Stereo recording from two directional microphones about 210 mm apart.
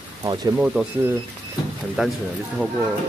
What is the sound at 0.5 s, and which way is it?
Speech, 5° right (ahead or behind).